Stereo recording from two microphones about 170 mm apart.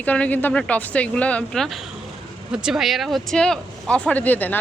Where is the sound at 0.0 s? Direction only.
10° left (ahead or behind).